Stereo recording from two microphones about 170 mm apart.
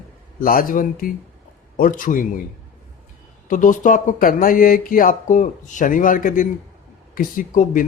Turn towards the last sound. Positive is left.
turn(degrees=55)  # may be behind; listen again after turning